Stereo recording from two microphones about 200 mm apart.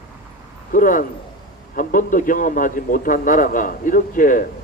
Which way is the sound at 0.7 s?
40° left (ahead or behind).